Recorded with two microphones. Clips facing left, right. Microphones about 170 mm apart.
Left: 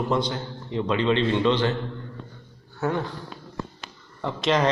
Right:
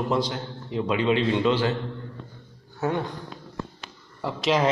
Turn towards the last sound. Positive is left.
turn(degrees=-5)  # may be behind; listen again after turning